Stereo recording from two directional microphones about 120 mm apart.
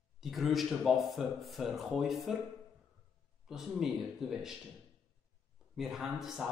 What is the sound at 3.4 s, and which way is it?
A man's voice, 5° right (ahead or behind).